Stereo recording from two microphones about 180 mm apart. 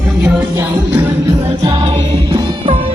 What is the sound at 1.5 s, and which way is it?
Music, 30° right (ahead or behind).